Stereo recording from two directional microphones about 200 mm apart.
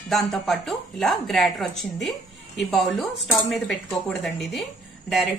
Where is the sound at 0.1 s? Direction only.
Centre (ahead or behind).